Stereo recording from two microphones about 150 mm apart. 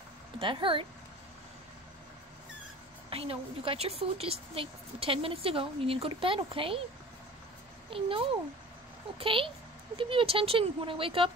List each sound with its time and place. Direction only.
0.4 s a woman's voice: 35° right (ahead or behind)
3.1 s a woman's voice: 40° right (ahead or behind)
7.9 s a woman's voice: 35° right (ahead or behind)